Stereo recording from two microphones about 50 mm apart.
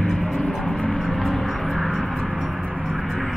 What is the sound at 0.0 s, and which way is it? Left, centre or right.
Music, centre.